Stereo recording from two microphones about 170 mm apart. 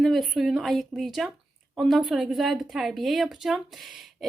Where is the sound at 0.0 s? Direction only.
Centre (ahead or behind).